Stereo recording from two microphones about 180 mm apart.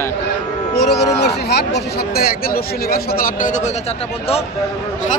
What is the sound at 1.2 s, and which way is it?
Speech, 65° left (ahead or behind).